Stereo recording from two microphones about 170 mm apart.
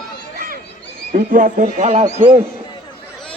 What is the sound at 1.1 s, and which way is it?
Speech, 50° right (ahead or behind).